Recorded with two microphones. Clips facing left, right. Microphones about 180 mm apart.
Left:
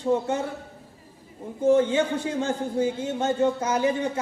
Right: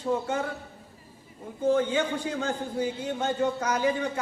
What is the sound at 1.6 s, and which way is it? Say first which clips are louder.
A man's voice: left 4 dB; 25° left (ahead or behind).